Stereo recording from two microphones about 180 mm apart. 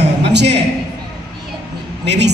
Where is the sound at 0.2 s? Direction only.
70° right (ahead or behind).